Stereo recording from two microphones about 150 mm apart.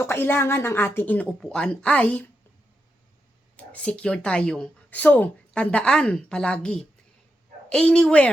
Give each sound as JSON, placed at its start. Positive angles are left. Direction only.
{"t": 0.0, "sound": "a woman's voice", "side_deg": 15}
{"t": 3.6, "sound": "a woman's voice", "side_deg": 10}